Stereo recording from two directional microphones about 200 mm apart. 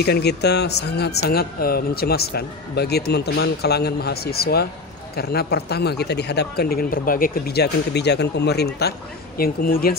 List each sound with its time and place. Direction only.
0.0 s speech: 55° left (ahead or behind)